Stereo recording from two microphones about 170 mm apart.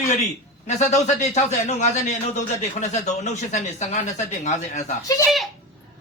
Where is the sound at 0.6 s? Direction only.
45° left (ahead or behind).